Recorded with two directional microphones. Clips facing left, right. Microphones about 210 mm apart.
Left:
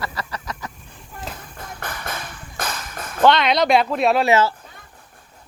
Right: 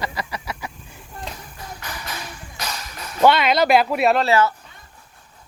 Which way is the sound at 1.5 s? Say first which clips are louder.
Left 2 dB; 55° left (ahead or behind).